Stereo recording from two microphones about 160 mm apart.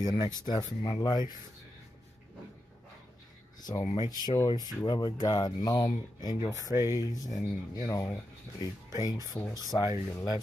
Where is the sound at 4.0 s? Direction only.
25° left (ahead or behind).